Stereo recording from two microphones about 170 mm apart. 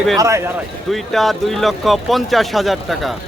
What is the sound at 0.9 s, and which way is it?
Speech, centre (ahead or behind).